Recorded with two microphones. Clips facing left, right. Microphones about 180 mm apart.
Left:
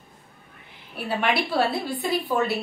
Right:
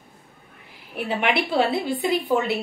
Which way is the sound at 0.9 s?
20° right (ahead or behind).